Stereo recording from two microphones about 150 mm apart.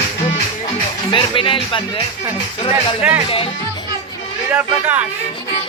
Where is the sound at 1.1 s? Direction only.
35° left (ahead or behind).